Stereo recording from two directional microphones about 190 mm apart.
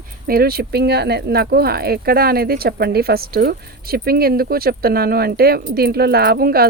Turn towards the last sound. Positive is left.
turn(degrees=-50)  # may be behind; listen again after turning